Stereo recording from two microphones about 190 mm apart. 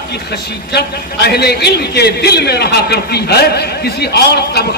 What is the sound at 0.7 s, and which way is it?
A man's voice, 60° left (ahead or behind).